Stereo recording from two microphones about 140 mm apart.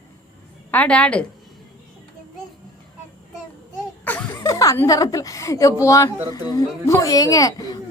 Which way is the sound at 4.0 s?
15° left (ahead or behind).